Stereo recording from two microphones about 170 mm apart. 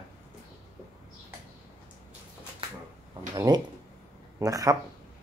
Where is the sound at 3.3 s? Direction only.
25° right (ahead or behind).